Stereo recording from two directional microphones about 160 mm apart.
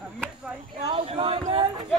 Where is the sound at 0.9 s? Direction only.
35° right (ahead or behind).